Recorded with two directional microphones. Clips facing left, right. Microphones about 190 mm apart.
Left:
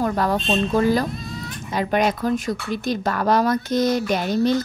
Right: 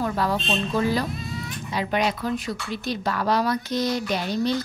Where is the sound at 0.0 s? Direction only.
50° left (ahead or behind).